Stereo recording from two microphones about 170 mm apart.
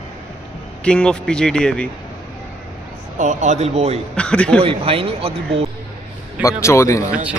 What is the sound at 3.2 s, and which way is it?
Speech, 45° right (ahead or behind).